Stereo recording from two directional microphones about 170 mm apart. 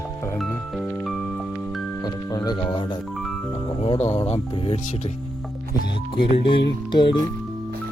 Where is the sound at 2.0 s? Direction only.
25° left (ahead or behind).